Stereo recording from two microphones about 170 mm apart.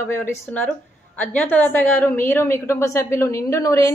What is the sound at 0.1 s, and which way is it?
A woman's voice, 15° left (ahead or behind).